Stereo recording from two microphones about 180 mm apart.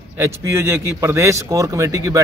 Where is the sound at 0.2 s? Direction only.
15° right (ahead or behind).